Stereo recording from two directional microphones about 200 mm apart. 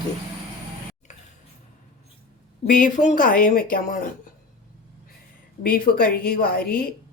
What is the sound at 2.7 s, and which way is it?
Speech, 40° left (ahead or behind).